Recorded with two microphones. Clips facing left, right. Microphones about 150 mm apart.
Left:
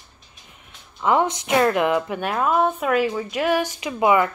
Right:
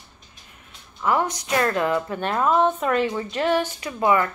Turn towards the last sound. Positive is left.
turn(degrees=15)  # may be behind; listen again after turning